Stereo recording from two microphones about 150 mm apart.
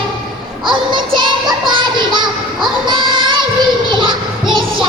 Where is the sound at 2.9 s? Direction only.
35° right (ahead or behind).